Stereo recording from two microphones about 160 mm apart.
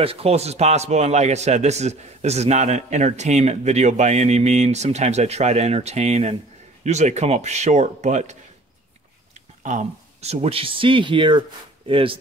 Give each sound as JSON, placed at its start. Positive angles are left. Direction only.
{"t": 0.0, "sound": "a man's voice", "side_deg": -35}
{"t": 9.6, "sound": "speech", "side_deg": -50}